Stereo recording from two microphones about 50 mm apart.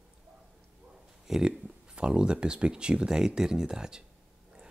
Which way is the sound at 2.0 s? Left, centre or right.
Centre.